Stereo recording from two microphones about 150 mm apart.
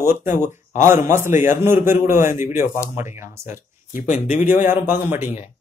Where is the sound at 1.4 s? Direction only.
15° right (ahead or behind).